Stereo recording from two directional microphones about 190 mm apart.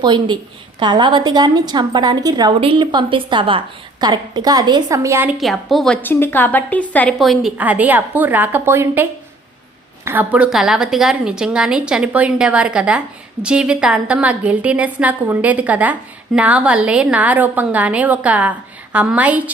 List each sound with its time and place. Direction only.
0.0 s a woman's voice: 25° right (ahead or behind); by 19.5 s 10° right (ahead or behind)